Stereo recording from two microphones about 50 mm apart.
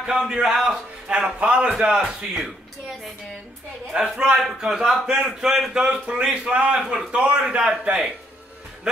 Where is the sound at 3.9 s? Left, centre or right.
Right.